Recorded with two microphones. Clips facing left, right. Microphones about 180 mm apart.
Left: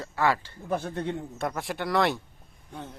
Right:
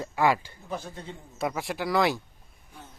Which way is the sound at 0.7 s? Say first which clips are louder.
Left 7 dB; 65° left (ahead or behind).